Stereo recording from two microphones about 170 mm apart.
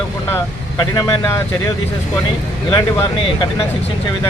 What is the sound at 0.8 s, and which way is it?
Speech, 20° left (ahead or behind).